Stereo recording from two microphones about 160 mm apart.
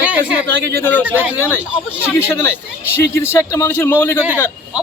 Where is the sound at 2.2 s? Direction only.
15° left (ahead or behind).